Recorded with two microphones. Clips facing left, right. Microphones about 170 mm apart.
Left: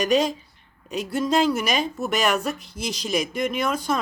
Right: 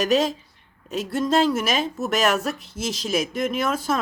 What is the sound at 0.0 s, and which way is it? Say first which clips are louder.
Speech: even; centre (ahead or behind).